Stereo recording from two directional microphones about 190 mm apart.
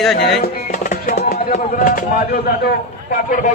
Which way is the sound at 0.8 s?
50° left (ahead or behind).